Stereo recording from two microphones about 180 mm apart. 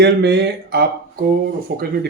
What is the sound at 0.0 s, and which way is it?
Speech, 70° right (ahead or behind).